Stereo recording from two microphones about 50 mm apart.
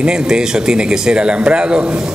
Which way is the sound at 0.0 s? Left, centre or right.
Centre.